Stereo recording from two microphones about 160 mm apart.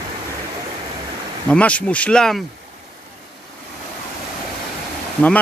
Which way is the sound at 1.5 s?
10° left (ahead or behind).